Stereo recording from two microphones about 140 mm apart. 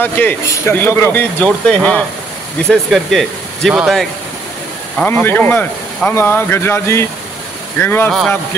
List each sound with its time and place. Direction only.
0.0 s speech: 15° left (ahead or behind); by 4.1 s centre (ahead or behind)
4.9 s speech: 15° left (ahead or behind)